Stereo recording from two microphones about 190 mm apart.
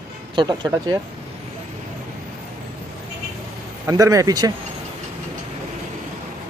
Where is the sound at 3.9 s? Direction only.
15° right (ahead or behind).